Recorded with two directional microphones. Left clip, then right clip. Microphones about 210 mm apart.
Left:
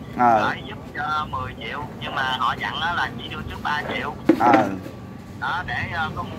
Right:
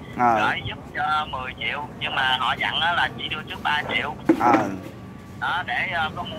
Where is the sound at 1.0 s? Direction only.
25° right (ahead or behind).